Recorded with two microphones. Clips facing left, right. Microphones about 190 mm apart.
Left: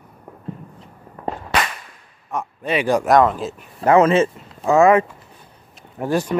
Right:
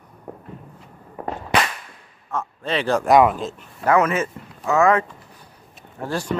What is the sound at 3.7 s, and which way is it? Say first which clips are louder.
Speech: left 5 dB; 25° left (ahead or behind).